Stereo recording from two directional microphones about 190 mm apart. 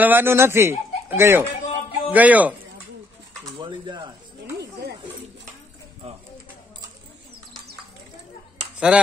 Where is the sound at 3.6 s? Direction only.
25° right (ahead or behind).